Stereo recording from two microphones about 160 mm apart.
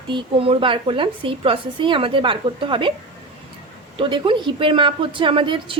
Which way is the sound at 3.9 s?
30° right (ahead or behind).